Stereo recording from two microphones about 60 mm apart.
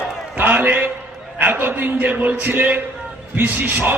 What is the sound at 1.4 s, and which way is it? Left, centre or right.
A man's voice, right.